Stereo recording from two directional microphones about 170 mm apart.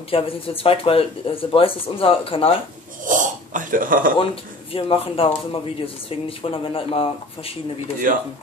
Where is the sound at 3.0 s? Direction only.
50° right (ahead or behind).